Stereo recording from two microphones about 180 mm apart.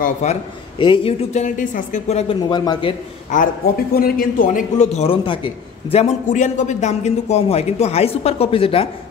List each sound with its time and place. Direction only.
0.0 s a man's voice: 40° left (ahead or behind)
0.7 s a man's voice: 25° left (ahead or behind)
2.5 s a man's voice: 25° left (ahead or behind)
3.3 s a man's voice: 50° left (ahead or behind); by 8.8 s 30° left (ahead or behind)